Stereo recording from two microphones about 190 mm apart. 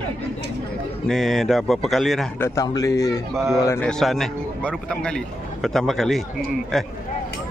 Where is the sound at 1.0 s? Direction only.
Centre (ahead or behind).